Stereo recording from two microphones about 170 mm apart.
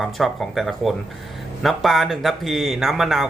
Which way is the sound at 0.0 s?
Centre (ahead or behind).